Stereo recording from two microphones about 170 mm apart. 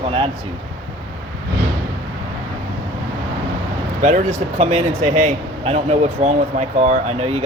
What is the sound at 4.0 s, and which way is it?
Speech, 40° right (ahead or behind).